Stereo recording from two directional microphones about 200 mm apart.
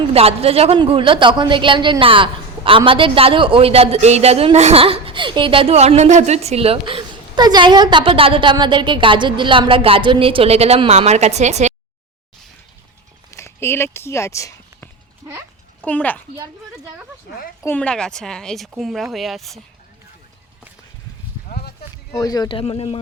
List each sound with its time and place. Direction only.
0.1 s a woman's voice: 30° right (ahead or behind)
13.3 s a child's voice: 15° left (ahead or behind)
16.4 s speech: 15° right (ahead or behind)
17.6 s a woman's voice: 10° left (ahead or behind)
21.4 s a sound: 50° left (ahead or behind)
22.2 s speech: 20° left (ahead or behind)